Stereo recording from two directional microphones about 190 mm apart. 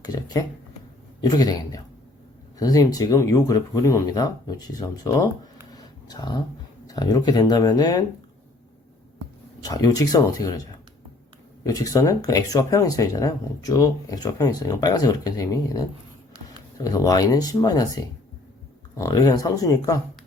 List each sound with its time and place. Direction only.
0.0 s speech: 20° left (ahead or behind)
5.7 s a sound: 20° left (ahead or behind)
6.8 s speech: 20° left (ahead or behind)
9.6 s speech: 20° left (ahead or behind)
11.6 s speech: 20° left (ahead or behind)